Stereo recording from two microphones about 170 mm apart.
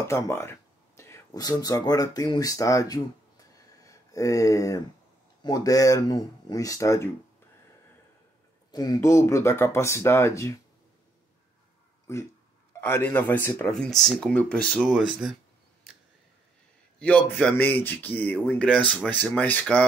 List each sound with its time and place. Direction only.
0.0 s speech: 15° left (ahead or behind)
8.7 s speech: 20° left (ahead or behind)
12.1 s speech: 15° left (ahead or behind); by 15.3 s centre (ahead or behind)
17.0 s speech: 10° left (ahead or behind)